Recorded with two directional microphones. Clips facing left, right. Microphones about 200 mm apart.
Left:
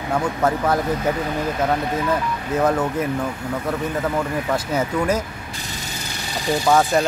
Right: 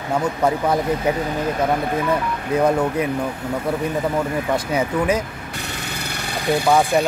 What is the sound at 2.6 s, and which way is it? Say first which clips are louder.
Speech: right 1 dB; 10° right (ahead or behind).